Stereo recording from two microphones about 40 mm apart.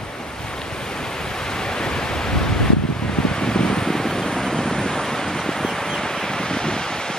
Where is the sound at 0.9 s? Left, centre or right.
Centre.